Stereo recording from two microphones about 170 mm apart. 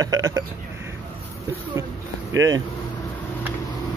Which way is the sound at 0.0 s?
20° right (ahead or behind).